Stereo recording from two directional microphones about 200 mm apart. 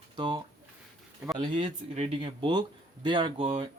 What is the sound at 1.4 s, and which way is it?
A man's voice, 25° right (ahead or behind).